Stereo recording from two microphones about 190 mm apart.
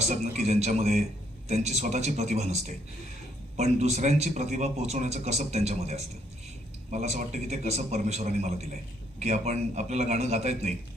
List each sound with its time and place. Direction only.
0.0 s speech: 35° right (ahead or behind)